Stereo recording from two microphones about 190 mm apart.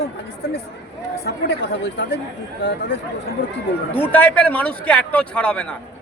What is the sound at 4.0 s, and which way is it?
A man's voice, 10° left (ahead or behind).